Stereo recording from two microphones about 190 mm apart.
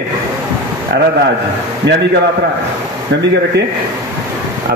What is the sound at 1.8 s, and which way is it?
Speech, 65° right (ahead or behind).